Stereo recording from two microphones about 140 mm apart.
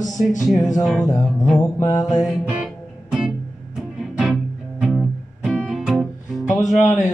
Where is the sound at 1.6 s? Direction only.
20° left (ahead or behind).